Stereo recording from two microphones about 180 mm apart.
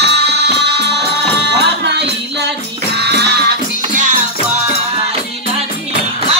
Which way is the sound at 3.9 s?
40° right (ahead or behind).